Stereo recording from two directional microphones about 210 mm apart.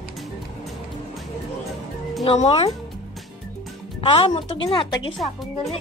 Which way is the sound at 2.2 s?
30° left (ahead or behind).